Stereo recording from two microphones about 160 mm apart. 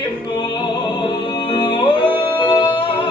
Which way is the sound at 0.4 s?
30° left (ahead or behind).